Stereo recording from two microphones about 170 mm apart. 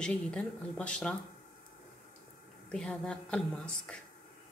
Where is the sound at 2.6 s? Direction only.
5° left (ahead or behind).